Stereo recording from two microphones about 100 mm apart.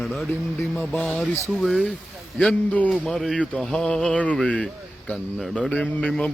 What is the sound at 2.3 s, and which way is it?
Speech, 10° left (ahead or behind).